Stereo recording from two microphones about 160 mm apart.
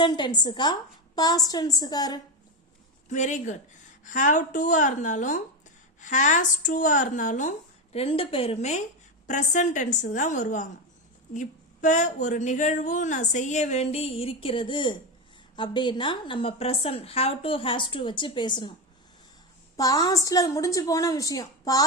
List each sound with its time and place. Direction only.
0.0 s a woman's voice: 25° left (ahead or behind)
3.1 s a woman's voice: 50° left (ahead or behind)
7.9 s a woman's voice: 35° left (ahead or behind)
19.7 s a woman's voice: 20° left (ahead or behind)